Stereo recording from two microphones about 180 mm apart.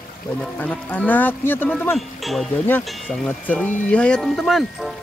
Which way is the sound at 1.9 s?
Centre (ahead or behind).